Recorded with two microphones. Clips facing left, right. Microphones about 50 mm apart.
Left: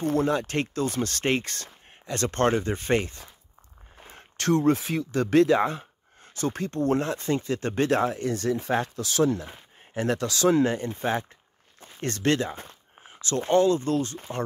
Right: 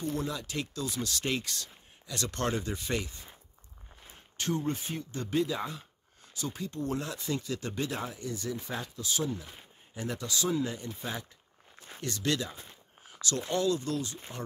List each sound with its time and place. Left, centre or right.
0.0 s speech: left
4.1 s speech: left
9.0 s speech: left